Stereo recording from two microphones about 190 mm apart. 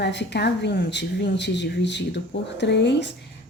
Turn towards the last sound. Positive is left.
turn(degrees=65)  # may be behind; listen again after turning